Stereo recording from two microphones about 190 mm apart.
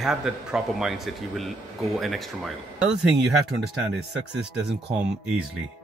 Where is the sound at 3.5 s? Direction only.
60° right (ahead or behind).